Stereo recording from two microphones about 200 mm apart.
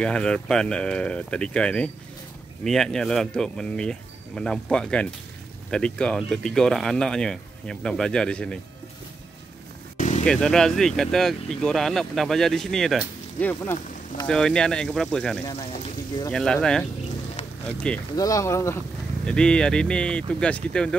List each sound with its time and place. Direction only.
0.0 s speech: 5° left (ahead or behind)
9.9 s vehicle: 40° left (ahead or behind)
10.2 s speech: 5° left (ahead or behind)
13.5 s speech: 10° left (ahead or behind)